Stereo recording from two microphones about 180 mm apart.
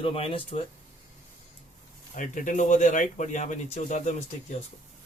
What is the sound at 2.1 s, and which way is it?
Speech, 45° left (ahead or behind).